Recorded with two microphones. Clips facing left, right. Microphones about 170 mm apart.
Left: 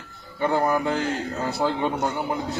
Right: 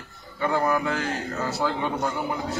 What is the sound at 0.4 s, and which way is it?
A man's voice, 25° left (ahead or behind).